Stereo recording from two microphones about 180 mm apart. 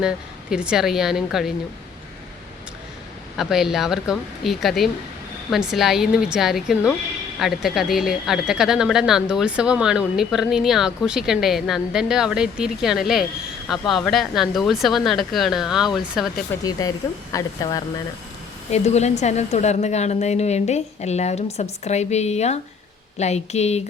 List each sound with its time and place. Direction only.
0.5 s speech: 5° right (ahead or behind)
3.3 s speech: centre (ahead or behind)
16.5 s speech: 15° left (ahead or behind)
18.7 s a woman's voice: 40° left (ahead or behind)